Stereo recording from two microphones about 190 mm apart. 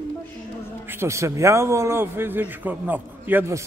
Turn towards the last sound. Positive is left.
turn(degrees=-15)  # may be behind; listen again after turning